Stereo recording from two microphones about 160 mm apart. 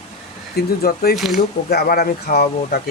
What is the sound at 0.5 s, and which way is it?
Speech, 75° left (ahead or behind).